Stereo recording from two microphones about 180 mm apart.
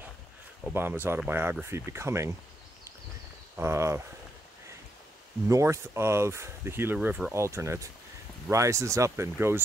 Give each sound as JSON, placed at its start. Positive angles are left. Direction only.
{"t": 0.7, "sound": "speech", "side_deg": -10}
{"t": 3.5, "sound": "speech", "side_deg": -15}
{"t": 5.5, "sound": "speech", "side_deg": -15}